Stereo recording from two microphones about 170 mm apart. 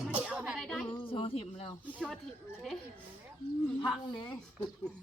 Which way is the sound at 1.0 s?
35° left (ahead or behind).